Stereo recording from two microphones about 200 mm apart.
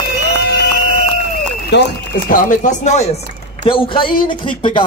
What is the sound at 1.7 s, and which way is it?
Speech, 60° left (ahead or behind).